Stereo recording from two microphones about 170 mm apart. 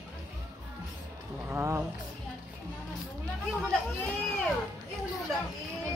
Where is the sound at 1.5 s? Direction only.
15° right (ahead or behind).